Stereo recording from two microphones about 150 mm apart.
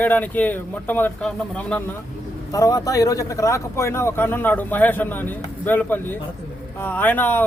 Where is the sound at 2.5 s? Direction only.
25° left (ahead or behind).